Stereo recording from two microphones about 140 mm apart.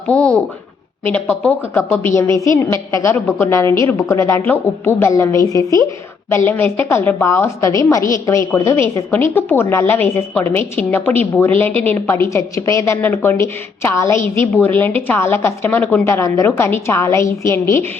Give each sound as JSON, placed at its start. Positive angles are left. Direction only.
{"t": 0.1, "sound": "a woman's voice", "side_deg": 10}